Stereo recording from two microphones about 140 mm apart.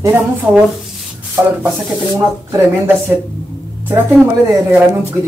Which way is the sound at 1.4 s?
15° right (ahead or behind).